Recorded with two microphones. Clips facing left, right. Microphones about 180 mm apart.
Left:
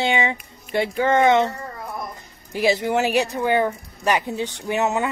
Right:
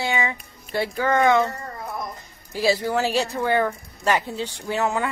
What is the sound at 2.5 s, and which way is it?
A woman's voice, 20° left (ahead or behind).